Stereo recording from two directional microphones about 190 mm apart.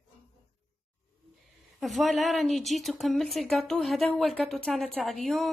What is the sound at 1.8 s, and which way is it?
A woman's voice, centre (ahead or behind).